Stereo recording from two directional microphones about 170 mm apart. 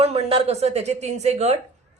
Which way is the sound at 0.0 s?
35° right (ahead or behind).